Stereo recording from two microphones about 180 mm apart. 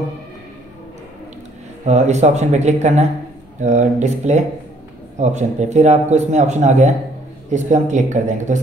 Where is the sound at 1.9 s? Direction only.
40° right (ahead or behind).